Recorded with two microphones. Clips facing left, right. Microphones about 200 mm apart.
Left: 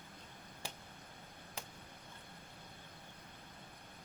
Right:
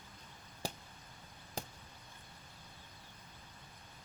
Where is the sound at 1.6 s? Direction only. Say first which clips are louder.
Right 7 dB; 40° right (ahead or behind).